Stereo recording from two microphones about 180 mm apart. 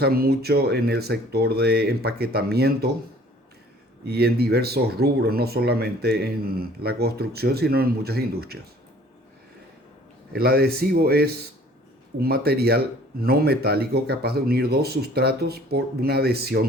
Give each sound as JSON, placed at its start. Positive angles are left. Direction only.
{"t": 0.0, "sound": "speech", "side_deg": -60}
{"t": 4.0, "sound": "speech", "side_deg": -60}
{"t": 10.3, "sound": "speech", "side_deg": -60}